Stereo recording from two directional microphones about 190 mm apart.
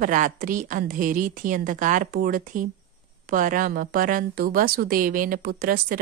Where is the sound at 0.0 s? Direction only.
45° right (ahead or behind).